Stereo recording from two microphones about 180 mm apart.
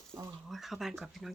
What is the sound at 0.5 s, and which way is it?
Speech, centre (ahead or behind).